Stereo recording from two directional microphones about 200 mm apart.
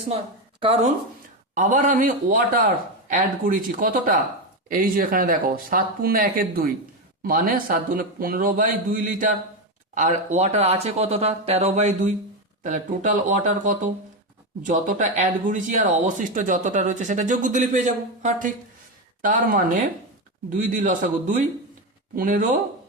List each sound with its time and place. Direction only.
0.6 s speech: 30° right (ahead or behind)
1.5 s a man's voice: 40° right (ahead or behind)